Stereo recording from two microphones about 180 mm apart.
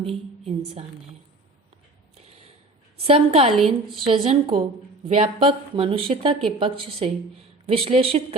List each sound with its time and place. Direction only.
0.4 s a woman's voice: 35° right (ahead or behind)
3.0 s speech: 30° right (ahead or behind)
3.5 s a woman's voice: centre (ahead or behind)
3.9 s speech: 30° right (ahead or behind)